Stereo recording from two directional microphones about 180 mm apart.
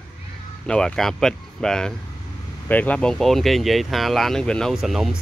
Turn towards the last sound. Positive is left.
turn(degrees=0)  # may be behind; listen again after turning